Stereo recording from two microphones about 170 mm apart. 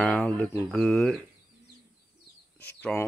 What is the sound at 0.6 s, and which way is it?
Speech, 5° left (ahead or behind).